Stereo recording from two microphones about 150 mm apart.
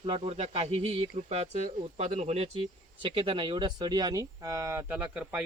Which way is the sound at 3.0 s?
35° right (ahead or behind).